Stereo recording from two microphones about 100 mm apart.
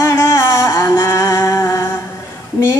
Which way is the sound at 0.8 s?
25° left (ahead or behind).